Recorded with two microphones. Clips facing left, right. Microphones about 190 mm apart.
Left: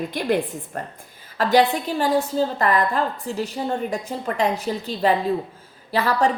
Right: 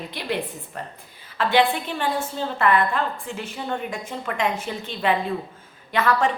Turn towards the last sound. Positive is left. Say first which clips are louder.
# left 1 dB
turn(degrees=35)  # may be behind; listen again after turning